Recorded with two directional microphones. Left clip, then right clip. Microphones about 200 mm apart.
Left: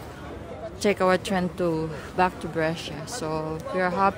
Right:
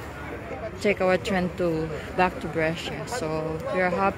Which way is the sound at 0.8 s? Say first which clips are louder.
Left 1 dB; 20° left (ahead or behind).